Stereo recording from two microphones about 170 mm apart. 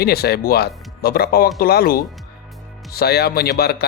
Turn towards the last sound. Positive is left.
turn(degrees=70)  # may be behind; listen again after turning